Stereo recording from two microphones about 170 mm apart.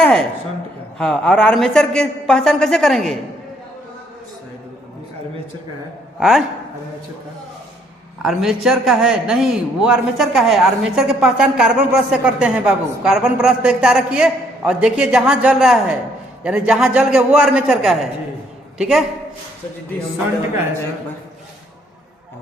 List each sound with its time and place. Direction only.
0.0 s a sound: 5° left (ahead or behind)
0.9 s speech: 5° left (ahead or behind)
6.1 s speech: centre (ahead or behind)
8.2 s speech: centre (ahead or behind)